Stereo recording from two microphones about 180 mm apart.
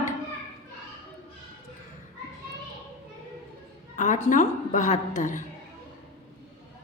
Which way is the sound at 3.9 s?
45° left (ahead or behind).